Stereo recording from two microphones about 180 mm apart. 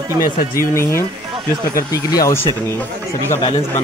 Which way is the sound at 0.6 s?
15° left (ahead or behind).